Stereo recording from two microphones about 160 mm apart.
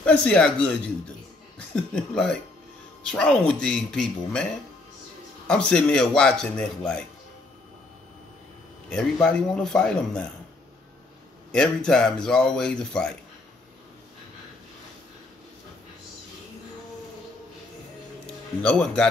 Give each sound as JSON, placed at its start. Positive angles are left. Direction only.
{"t": 0.0, "sound": "speech", "side_deg": 5}
{"t": 3.0, "sound": "speech", "side_deg": 5}
{"t": 5.5, "sound": "speech", "side_deg": 5}
{"t": 8.9, "sound": "speech", "side_deg": 5}
{"t": 11.5, "sound": "speech", "side_deg": 5}
{"t": 18.2, "sound": "speech", "side_deg": 5}